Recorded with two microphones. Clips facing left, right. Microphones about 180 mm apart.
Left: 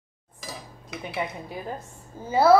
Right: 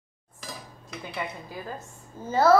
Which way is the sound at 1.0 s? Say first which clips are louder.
Left 4 dB; 20° left (ahead or behind).